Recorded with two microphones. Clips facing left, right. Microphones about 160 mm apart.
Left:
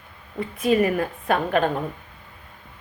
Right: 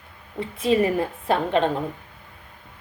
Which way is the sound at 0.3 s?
25° right (ahead or behind).